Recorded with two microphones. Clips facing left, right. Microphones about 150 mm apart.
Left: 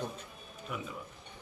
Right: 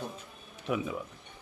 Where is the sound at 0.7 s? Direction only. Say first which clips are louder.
Right 9 dB; 90° right.